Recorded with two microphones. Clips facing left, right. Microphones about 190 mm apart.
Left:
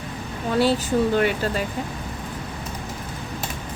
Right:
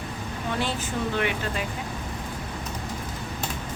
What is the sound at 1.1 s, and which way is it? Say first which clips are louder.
Speech: left 6 dB; 40° left (ahead or behind).